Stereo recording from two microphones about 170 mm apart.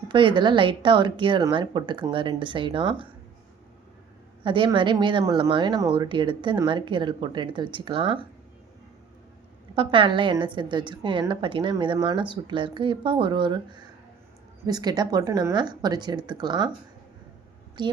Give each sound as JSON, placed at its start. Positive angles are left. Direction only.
{"t": 0.1, "sound": "a woman's voice", "side_deg": -30}
{"t": 4.4, "sound": "a woman's voice", "side_deg": -30}
{"t": 9.7, "sound": "a woman's voice", "side_deg": -30}
{"t": 17.8, "sound": "a woman's voice", "side_deg": -25}